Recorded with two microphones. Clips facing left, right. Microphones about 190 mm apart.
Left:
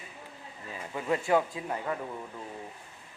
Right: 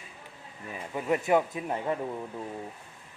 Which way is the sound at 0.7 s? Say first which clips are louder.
Right 2 dB; 15° right (ahead or behind).